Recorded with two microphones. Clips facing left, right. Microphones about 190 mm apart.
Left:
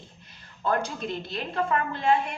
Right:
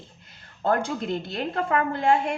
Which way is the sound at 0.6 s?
50° right (ahead or behind).